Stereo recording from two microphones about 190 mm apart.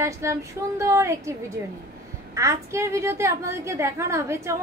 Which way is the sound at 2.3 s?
15° right (ahead or behind).